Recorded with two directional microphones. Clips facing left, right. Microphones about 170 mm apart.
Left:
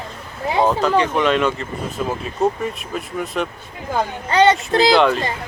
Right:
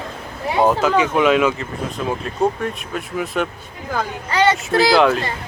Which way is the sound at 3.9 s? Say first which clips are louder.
Left 3 dB; 25° left (ahead or behind).